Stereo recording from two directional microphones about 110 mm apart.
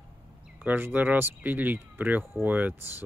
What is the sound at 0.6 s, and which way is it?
Speech, 20° right (ahead or behind).